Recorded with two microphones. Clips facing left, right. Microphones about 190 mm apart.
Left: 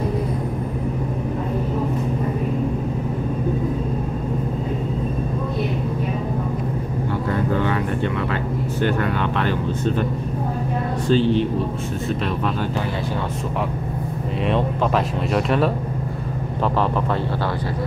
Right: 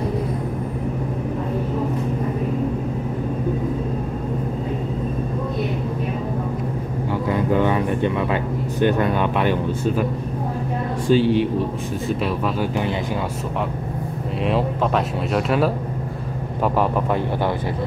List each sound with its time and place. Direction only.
7.2 s music: 15° right (ahead or behind)
8.8 s speech: 20° right (ahead or behind)
11.1 s speech: 10° right (ahead or behind)
14.4 s speech: centre (ahead or behind)